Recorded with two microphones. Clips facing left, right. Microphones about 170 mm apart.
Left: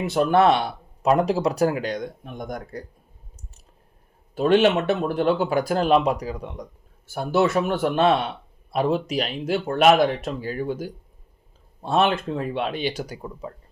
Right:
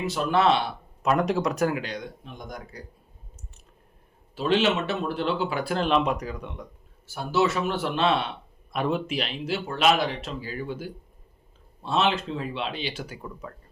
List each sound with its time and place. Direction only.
0.0 s speech: 55° left (ahead or behind)
1.0 s speech: 30° left (ahead or behind); by 2.8 s 55° left (ahead or behind)
4.4 s speech: 50° left (ahead or behind); by 6.7 s 35° left (ahead or behind)
7.1 s speech: 55° left (ahead or behind)